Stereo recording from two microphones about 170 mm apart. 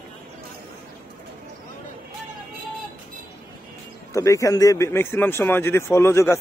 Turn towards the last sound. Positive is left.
turn(degrees=15)  # may be behind; listen again after turning